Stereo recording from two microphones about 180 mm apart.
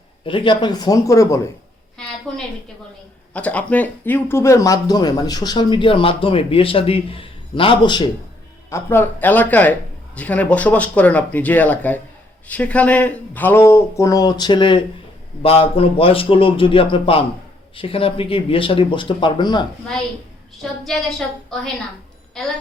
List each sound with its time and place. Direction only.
0.3 s speech: 30° left (ahead or behind)
2.3 s a woman's voice: centre (ahead or behind); by 8.1 s 25° left (ahead or behind)
8.7 s a man's voice: 10° left (ahead or behind)
20.6 s a woman's voice: centre (ahead or behind)